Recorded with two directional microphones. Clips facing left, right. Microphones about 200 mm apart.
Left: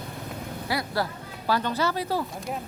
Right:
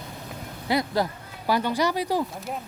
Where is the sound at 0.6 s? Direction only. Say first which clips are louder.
Right 4 dB; 20° right (ahead or behind).